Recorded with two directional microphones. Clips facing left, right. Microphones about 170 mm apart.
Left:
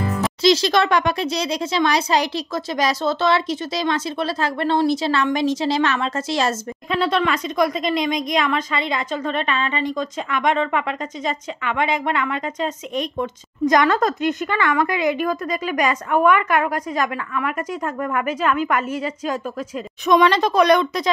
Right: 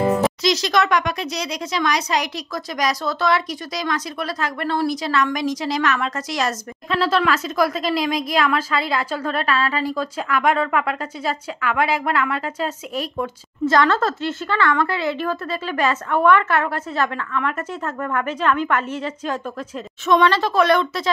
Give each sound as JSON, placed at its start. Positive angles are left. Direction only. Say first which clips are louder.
{"t": 0.4, "sound": "a child's voice", "louder": "left 3 dB", "side_deg": 30}
{"t": 6.9, "sound": "speech", "louder": "right 1 dB", "side_deg": 0}
{"t": 13.2, "sound": "a woman's voice", "louder": "even", "side_deg": 15}